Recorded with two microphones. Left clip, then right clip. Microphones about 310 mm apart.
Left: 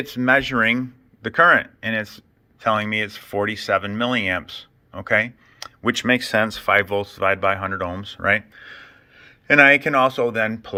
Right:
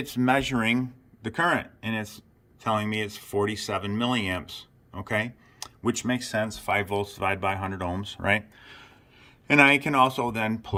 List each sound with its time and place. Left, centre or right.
0.0 s speech: centre
6.1 s speech: centre